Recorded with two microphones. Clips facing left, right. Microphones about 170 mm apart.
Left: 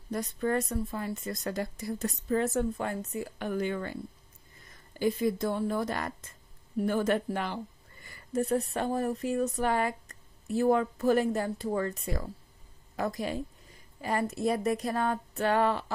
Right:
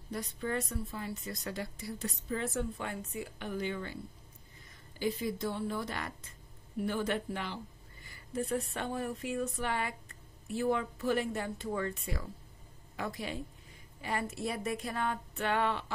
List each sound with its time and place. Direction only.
0.1 s a woman's voice: 45° left (ahead or behind)